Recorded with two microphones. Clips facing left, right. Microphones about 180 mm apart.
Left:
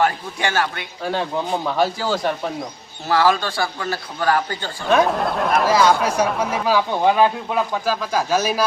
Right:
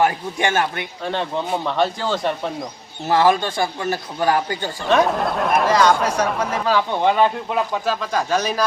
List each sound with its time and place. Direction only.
0.0 s speech: 20° right (ahead or behind)
1.0 s speech: 5° left (ahead or behind)
3.1 s a man's voice: 20° right (ahead or behind)
4.9 s speech: centre (ahead or behind)